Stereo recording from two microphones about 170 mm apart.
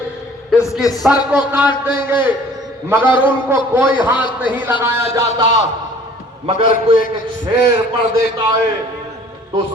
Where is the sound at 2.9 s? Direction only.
15° right (ahead or behind).